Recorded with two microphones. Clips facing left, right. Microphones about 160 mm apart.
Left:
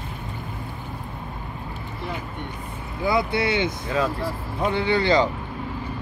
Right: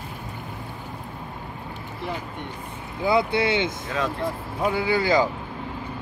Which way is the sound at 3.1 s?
20° right (ahead or behind).